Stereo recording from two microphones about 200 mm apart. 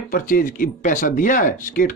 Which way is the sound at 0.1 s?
45° left (ahead or behind).